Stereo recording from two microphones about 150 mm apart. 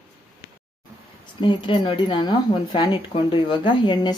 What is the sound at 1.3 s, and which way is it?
A woman's voice, 35° left (ahead or behind).